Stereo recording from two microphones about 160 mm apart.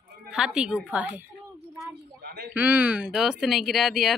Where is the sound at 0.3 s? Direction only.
5° right (ahead or behind).